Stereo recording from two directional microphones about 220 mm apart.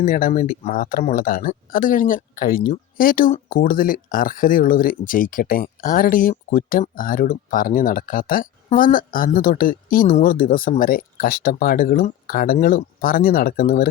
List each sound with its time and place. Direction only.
0.0 s speech: 35° left (ahead or behind)